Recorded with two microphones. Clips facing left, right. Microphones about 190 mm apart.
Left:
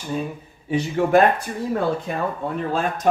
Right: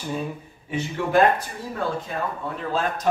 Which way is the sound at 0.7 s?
35° left (ahead or behind).